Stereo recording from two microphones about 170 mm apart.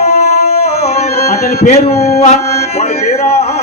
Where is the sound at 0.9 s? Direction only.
40° left (ahead or behind).